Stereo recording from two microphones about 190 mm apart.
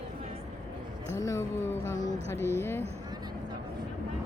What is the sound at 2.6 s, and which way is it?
Speech, 15° left (ahead or behind).